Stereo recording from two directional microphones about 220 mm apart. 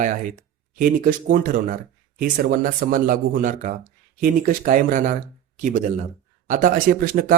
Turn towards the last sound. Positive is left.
turn(degrees=-40)  # may be behind; listen again after turning